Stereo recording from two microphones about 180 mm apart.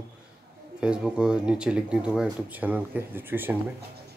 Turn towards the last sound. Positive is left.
turn(degrees=-10)  # may be behind; listen again after turning